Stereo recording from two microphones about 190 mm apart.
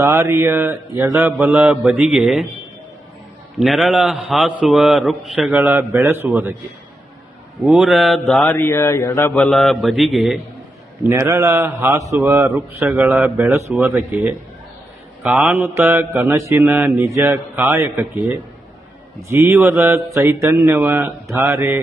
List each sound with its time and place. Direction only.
0.0 s mantra: 15° right (ahead or behind)
1.1 s a man's voice: 10° right (ahead or behind)
3.6 s a man's voice: centre (ahead or behind)
7.6 s a man's voice: 5° right (ahead or behind)
11.0 s mantra: 10° right (ahead or behind)
12.5 s a man's voice: centre (ahead or behind)
13.8 s mantra: 10° right (ahead or behind)
15.2 s a man's voice: 5° right (ahead or behind)
15.6 s mantra: 10° right (ahead or behind)